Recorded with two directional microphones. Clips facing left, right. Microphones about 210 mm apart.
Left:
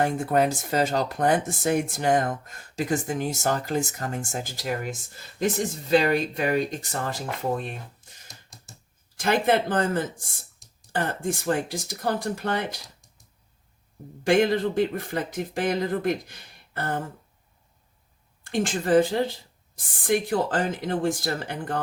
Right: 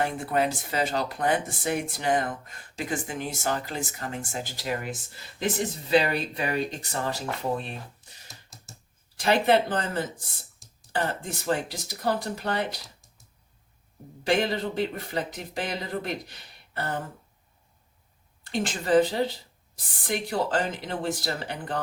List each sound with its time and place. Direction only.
0.0 s speech: 45° left (ahead or behind)
8.3 s typing: centre (ahead or behind)
9.1 s speech: 50° left (ahead or behind)
14.3 s speech: 50° left (ahead or behind)
18.4 s speech: 50° left (ahead or behind)